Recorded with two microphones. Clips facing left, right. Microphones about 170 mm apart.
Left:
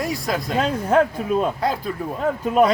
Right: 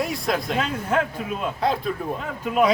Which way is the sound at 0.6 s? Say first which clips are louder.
Left 5 dB; 40° left (ahead or behind).